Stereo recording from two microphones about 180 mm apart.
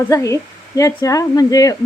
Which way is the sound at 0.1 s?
15° left (ahead or behind).